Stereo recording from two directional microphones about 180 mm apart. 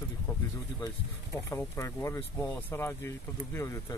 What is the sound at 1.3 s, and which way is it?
Speech, 15° left (ahead or behind).